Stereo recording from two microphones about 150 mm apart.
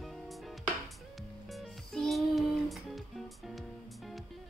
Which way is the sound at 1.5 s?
Centre (ahead or behind).